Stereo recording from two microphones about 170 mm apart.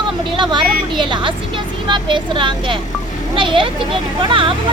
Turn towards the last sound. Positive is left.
turn(degrees=-30)  # may be behind; listen again after turning